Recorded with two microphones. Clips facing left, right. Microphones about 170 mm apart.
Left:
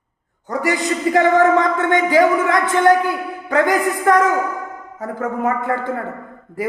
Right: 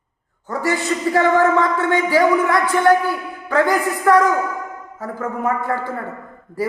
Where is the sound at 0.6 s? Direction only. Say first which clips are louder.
Left 1 dB; 15° left (ahead or behind).